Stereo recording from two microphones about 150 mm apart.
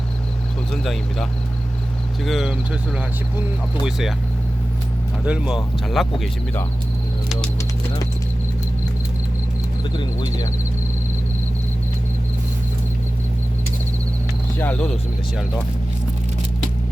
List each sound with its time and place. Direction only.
0.7 s speech: centre (ahead or behind)
3.8 s speech: 5° right (ahead or behind)
5.2 s speech: 10° right (ahead or behind)
9.9 s speech: 30° left (ahead or behind)
14.6 s speech: 5° left (ahead or behind)